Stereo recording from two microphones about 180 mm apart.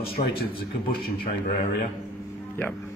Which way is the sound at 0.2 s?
35° left (ahead or behind).